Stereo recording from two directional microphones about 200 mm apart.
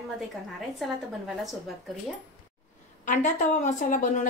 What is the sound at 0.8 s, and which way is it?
Speech, centre (ahead or behind).